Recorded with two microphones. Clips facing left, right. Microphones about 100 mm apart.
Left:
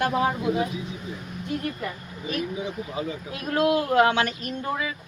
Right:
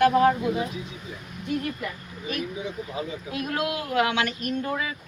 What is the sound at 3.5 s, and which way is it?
Speech, 35° left (ahead or behind).